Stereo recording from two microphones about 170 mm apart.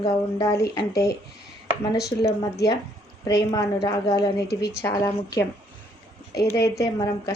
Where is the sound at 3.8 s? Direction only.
25° left (ahead or behind).